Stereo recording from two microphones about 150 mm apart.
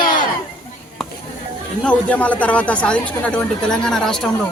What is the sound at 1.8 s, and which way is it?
Speech, 10° left (ahead or behind).